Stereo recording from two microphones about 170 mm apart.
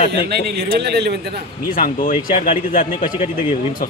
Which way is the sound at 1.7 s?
55° left (ahead or behind).